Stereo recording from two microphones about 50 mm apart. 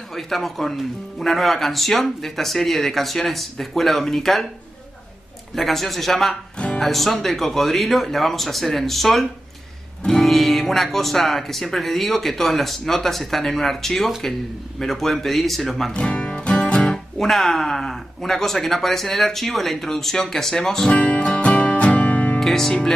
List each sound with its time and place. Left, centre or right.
0.1 s speech: centre
5.6 s speech: centre
15.9 s music: centre
17.2 s speech: centre
20.9 s music: left
22.4 s speech: centre